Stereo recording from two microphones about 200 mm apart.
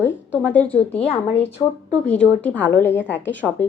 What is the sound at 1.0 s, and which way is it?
Speech, 30° left (ahead or behind).